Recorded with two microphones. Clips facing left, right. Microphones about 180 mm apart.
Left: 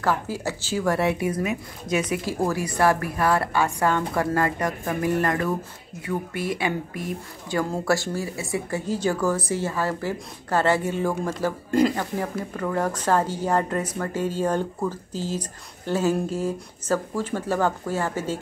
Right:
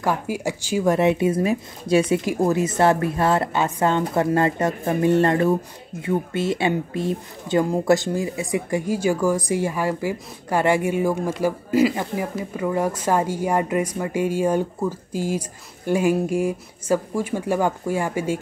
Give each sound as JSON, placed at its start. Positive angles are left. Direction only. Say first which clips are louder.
{"t": 0.0, "sound": "speech", "louder": "right 2 dB", "side_deg": -15}